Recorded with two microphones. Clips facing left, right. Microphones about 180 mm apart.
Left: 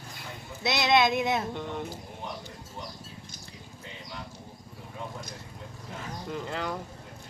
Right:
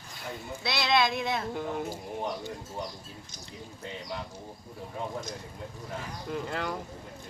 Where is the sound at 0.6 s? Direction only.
20° left (ahead or behind).